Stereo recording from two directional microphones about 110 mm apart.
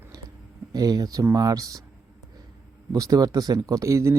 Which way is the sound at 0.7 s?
35° right (ahead or behind).